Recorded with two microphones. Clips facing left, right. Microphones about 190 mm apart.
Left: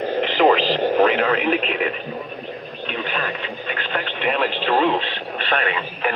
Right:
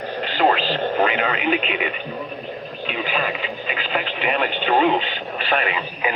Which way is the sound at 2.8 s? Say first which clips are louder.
Right 2 dB; 5° right (ahead or behind).